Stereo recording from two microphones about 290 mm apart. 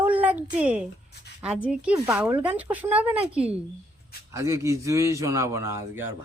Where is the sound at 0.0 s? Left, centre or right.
Centre.